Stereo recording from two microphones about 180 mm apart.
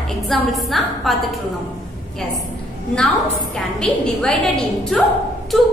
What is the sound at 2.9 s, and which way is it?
A woman's voice, 5° left (ahead or behind).